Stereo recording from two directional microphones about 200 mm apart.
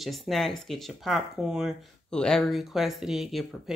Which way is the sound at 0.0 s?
Centre (ahead or behind).